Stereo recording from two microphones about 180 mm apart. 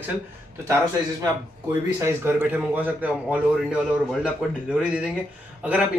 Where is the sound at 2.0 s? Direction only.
10° right (ahead or behind).